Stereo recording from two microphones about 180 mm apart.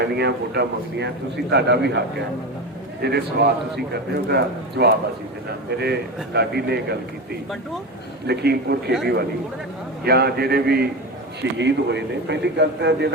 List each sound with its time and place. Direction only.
0.0 s a man's voice: 65° right (ahead or behind)
3.0 s a man's voice: 65° right (ahead or behind)
8.3 s a man's voice: 65° right (ahead or behind)
10.0 s a man's voice: 60° right (ahead or behind)
11.5 s a man's voice: 75° right (ahead or behind)